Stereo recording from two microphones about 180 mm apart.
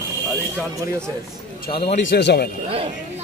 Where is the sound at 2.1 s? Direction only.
65° left (ahead or behind).